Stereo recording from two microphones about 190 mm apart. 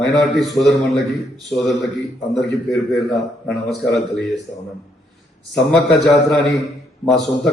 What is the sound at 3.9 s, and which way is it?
Speech, 65° left (ahead or behind).